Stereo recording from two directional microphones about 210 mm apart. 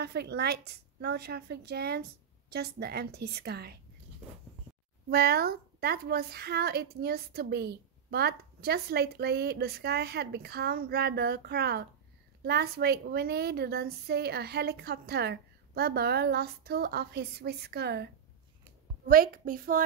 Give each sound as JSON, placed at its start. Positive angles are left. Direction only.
{"t": 0.0, "sound": "a woman's voice", "side_deg": -50}
{"t": 5.1, "sound": "a woman's voice", "side_deg": -50}